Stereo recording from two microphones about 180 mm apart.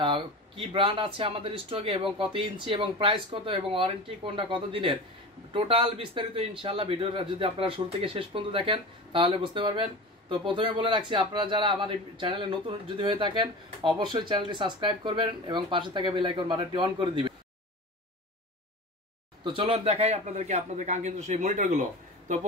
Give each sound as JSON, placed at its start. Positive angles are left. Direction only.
{"t": 0.0, "sound": "a man's voice", "side_deg": -25}
{"t": 19.4, "sound": "a man's voice", "side_deg": -30}